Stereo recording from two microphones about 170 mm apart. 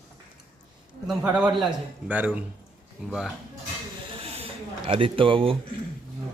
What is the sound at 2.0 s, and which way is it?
A man's voice, 10° right (ahead or behind).